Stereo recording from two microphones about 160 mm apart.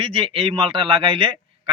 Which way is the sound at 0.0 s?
35° right (ahead or behind).